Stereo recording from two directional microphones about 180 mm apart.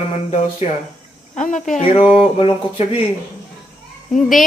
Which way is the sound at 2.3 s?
30° left (ahead or behind).